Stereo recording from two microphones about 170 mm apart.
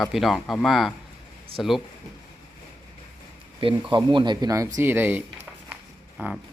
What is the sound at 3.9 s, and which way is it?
Speech, 30° right (ahead or behind).